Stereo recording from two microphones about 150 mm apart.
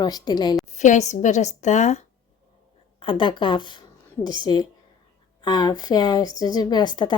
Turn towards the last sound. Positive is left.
turn(degrees=30)  # may be behind; listen again after turning